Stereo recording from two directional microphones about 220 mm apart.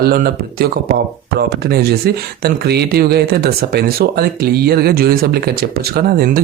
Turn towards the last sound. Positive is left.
turn(degrees=-45)  # may be behind; listen again after turning